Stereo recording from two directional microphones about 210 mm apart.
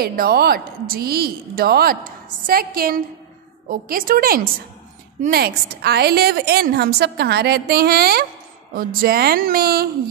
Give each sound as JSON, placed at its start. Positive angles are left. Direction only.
{"t": 0.0, "sound": "a woman's voice", "side_deg": -45}